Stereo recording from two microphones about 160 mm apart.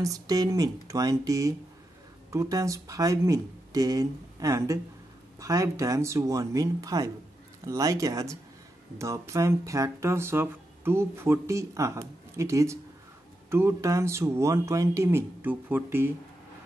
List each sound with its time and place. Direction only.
0.0 s speech: 20° right (ahead or behind)